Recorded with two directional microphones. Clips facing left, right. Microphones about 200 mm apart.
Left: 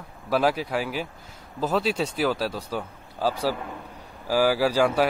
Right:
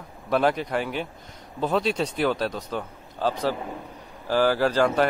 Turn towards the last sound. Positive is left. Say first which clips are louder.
# even
turn(degrees=10)  # may be behind; listen again after turning